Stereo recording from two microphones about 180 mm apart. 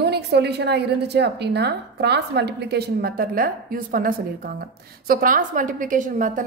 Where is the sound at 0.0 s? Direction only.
65° right (ahead or behind).